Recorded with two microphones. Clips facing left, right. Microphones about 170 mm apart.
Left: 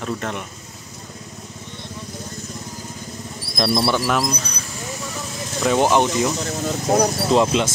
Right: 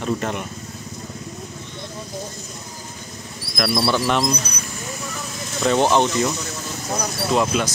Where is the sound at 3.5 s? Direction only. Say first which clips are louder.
Left 2 dB; 25° left (ahead or behind).